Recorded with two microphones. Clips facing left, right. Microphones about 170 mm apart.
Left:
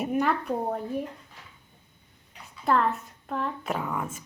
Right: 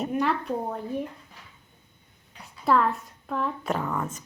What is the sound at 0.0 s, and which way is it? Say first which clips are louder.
Speech: even; 10° left (ahead or behind).